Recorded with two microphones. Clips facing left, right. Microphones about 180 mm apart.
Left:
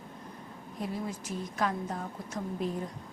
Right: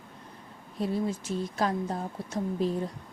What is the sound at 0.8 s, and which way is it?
A woman's voice, 30° right (ahead or behind).